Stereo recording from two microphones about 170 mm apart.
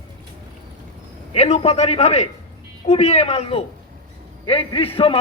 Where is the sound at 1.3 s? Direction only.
40° left (ahead or behind).